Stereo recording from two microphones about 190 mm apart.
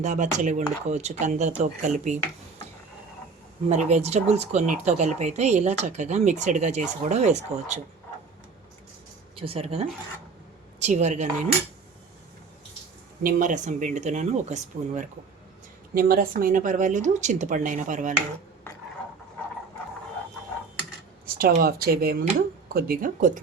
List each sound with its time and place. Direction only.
0.0 s speech: 40° right (ahead or behind)
3.7 s speech: 35° right (ahead or behind)
9.4 s speech: 30° right (ahead or behind)
13.2 s speech: 45° right (ahead or behind)
16.0 s a woman's voice: 50° right (ahead or behind)
21.2 s a woman's voice: 50° right (ahead or behind)